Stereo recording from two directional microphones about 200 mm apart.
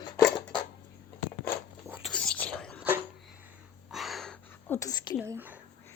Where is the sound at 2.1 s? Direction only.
5° left (ahead or behind).